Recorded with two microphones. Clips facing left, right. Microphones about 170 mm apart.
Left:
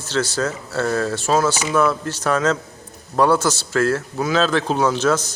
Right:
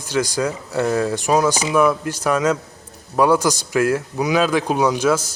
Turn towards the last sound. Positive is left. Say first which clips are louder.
# right 1 dB
turn(degrees=-10)  # may be behind; listen again after turning